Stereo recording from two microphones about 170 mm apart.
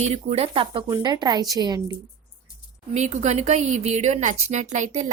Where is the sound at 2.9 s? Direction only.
40° right (ahead or behind).